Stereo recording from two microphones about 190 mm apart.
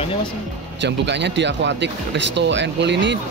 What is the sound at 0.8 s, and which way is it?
Speech, 65° right (ahead or behind).